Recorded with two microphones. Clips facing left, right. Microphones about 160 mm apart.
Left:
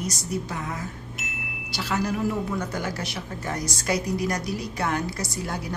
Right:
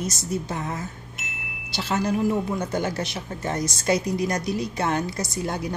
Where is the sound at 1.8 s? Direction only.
25° right (ahead or behind).